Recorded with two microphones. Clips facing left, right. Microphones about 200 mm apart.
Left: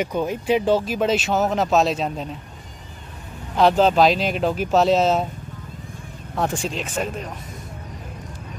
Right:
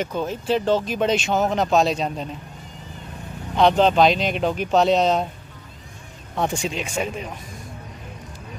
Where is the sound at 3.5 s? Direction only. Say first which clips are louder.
Even; 5° left (ahead or behind).